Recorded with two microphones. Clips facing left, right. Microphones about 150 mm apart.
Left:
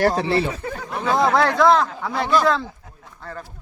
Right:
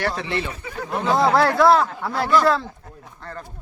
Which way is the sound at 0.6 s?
50° left (ahead or behind).